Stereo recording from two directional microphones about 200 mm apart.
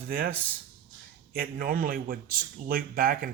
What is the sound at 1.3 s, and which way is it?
A man's voice, 45° right (ahead or behind).